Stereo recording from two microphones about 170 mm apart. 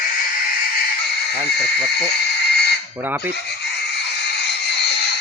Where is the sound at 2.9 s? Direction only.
10° right (ahead or behind).